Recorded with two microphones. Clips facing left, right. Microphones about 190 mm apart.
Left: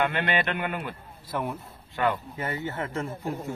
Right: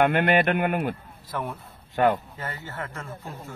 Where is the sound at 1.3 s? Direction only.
15° left (ahead or behind).